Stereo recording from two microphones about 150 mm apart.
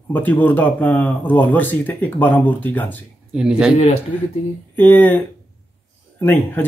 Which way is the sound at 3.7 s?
50° left (ahead or behind).